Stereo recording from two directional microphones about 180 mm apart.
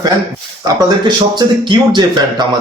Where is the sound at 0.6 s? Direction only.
25° right (ahead or behind).